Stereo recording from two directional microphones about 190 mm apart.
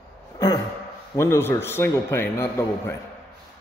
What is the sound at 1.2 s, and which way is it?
A man's voice, 15° left (ahead or behind).